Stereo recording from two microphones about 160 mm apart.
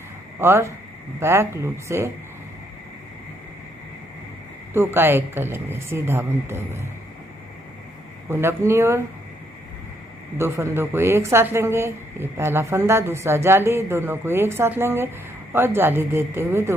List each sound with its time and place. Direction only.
0.4 s speech: 15° right (ahead or behind)
4.7 s speech: 15° right (ahead or behind)
8.3 s speech: 15° right (ahead or behind)
10.3 s speech: 15° right (ahead or behind)